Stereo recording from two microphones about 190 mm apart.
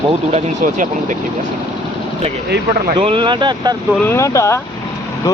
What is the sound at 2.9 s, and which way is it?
Speech, 25° right (ahead or behind).